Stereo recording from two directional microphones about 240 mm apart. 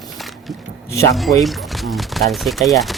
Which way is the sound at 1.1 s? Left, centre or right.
Centre.